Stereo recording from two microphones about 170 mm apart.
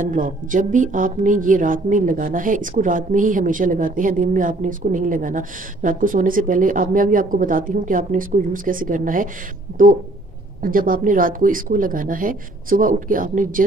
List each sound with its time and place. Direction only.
0.0 s a woman's voice: 50° right (ahead or behind)
10.6 s a woman's voice: 55° right (ahead or behind)